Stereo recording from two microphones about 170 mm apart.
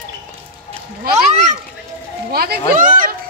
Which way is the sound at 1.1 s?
40° right (ahead or behind).